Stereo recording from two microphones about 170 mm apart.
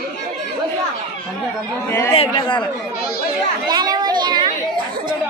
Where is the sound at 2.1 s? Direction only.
30° left (ahead or behind).